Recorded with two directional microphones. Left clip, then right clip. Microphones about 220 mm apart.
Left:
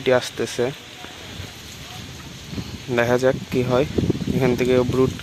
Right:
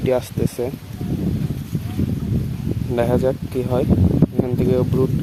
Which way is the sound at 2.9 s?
Centre (ahead or behind).